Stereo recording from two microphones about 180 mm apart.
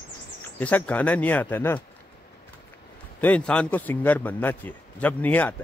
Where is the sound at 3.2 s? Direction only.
5° left (ahead or behind).